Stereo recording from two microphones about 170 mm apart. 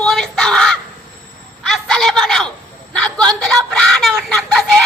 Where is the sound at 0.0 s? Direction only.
5° left (ahead or behind).